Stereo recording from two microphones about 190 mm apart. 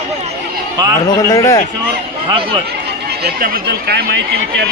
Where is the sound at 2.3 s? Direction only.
25° right (ahead or behind).